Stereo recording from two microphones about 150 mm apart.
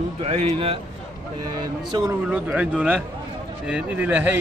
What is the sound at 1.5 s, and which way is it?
Speech, 25° right (ahead or behind).